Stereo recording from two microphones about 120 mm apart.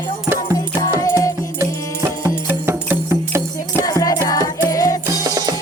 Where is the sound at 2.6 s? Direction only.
20° right (ahead or behind).